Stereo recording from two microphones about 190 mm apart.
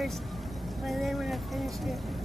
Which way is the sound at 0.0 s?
Centre (ahead or behind).